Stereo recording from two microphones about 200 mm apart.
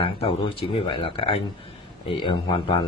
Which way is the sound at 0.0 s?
30° left (ahead or behind).